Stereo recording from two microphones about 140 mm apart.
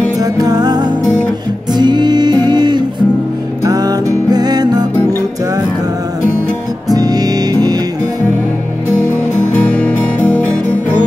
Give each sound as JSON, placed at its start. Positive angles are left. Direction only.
{"t": 0.2, "sound": "music", "side_deg": -30}
{"t": 6.9, "sound": "music", "side_deg": -25}
{"t": 9.5, "sound": "music", "side_deg": 10}